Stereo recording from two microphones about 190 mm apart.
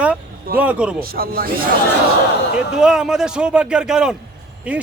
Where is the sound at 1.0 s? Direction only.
50° right (ahead or behind).